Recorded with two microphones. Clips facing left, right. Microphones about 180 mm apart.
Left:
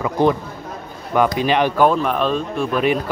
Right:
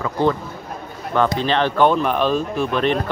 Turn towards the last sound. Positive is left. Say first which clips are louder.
# left 1 dB
turn(degrees=10)  # may be behind; listen again after turning